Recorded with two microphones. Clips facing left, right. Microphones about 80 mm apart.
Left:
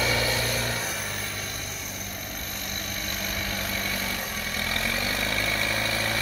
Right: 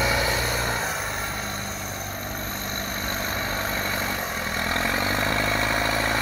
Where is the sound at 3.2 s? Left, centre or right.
Right.